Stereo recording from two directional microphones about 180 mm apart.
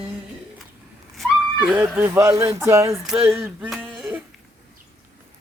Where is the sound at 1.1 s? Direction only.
5° right (ahead or behind).